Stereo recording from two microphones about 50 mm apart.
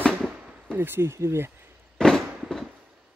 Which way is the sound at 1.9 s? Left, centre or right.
Centre.